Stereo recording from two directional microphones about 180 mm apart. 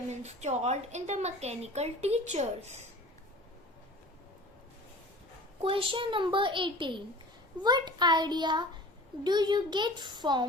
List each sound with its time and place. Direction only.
0.1 s a woman's voice: 40° right (ahead or behind)
5.6 s a child's voice: 30° right (ahead or behind)